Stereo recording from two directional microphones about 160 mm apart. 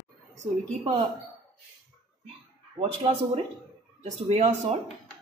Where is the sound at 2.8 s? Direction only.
35° right (ahead or behind).